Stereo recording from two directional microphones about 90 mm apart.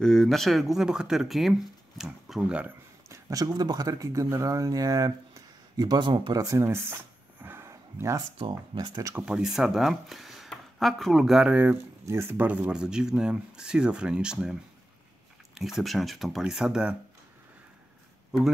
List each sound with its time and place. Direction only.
0.0 s speech: 5° left (ahead or behind)
3.1 s a man's voice: 40° right (ahead or behind); by 6.3 s 60° right (ahead or behind)
6.3 s a sound: 35° right (ahead or behind)
7.7 s a sound: 35° right (ahead or behind)
9.1 s speech: 10° right (ahead or behind)
11.5 s speech: 20° right (ahead or behind)